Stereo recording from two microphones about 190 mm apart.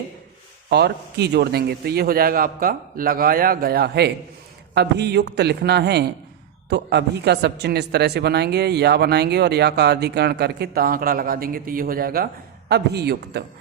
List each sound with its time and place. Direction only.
0.7 s a man's voice: 60° right (ahead or behind)